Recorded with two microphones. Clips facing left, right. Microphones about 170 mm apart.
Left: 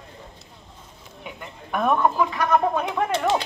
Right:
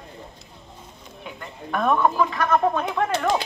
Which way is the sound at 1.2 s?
10° left (ahead or behind).